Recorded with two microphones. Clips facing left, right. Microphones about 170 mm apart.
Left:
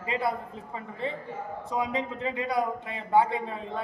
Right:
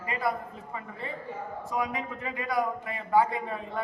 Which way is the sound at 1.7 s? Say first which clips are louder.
Left 2 dB; 25° left (ahead or behind).